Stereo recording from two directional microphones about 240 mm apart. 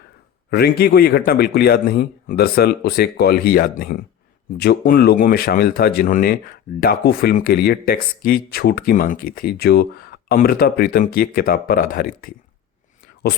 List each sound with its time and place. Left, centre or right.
0.5 s speech: left